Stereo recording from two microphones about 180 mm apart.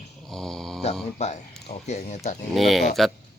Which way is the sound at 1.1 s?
40° left (ahead or behind).